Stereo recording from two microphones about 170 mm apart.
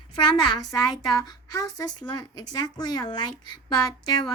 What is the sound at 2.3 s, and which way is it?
Speech, 25° left (ahead or behind).